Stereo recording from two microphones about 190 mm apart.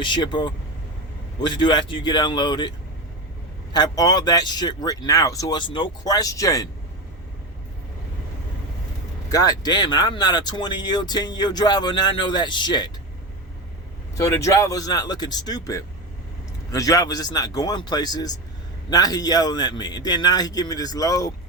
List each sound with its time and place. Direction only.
0.0 s speech: 25° left (ahead or behind)
9.3 s speech: 20° left (ahead or behind)
14.2 s speech: 15° left (ahead or behind)